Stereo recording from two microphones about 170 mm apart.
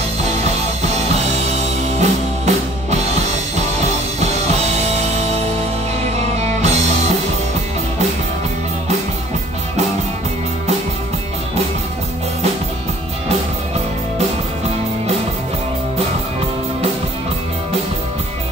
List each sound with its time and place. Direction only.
2.0 s music: 40° right (ahead or behind)
6.4 s music: 40° right (ahead or behind)